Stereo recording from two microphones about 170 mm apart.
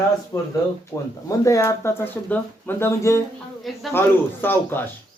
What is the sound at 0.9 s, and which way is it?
Speech, 15° left (ahead or behind).